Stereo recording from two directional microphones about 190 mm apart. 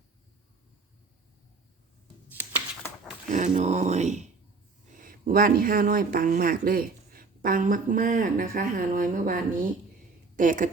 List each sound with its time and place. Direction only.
3.2 s a woman's voice: 40° right (ahead or behind)